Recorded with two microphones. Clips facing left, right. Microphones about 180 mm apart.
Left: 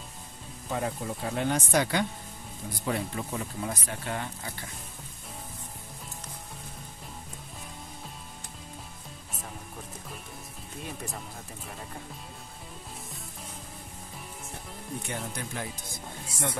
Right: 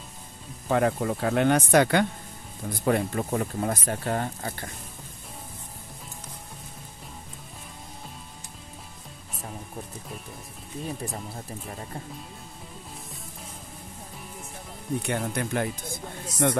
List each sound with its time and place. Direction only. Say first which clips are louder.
0.7 s speech: right 8 dB; 65° right (ahead or behind); by 4.6 s 50° right (ahead or behind)
15.0 s speech: right 8 dB; 65° right (ahead or behind)